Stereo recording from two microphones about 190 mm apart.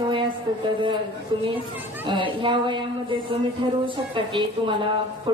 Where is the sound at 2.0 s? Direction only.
25° right (ahead or behind).